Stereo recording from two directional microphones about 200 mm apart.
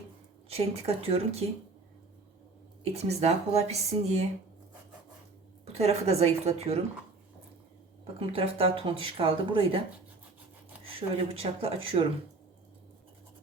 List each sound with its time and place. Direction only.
0.4 s speech: 30° right (ahead or behind)
2.9 s speech: 30° right (ahead or behind)
5.6 s speech: 30° right (ahead or behind)
8.2 s speech: 30° right (ahead or behind)
10.8 s speech: 30° right (ahead or behind)